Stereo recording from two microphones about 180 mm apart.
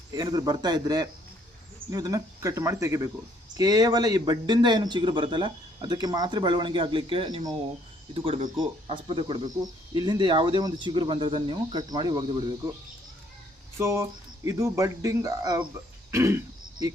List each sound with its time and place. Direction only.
0.1 s a man's voice: 20° right (ahead or behind)
13.7 s speech: 15° right (ahead or behind)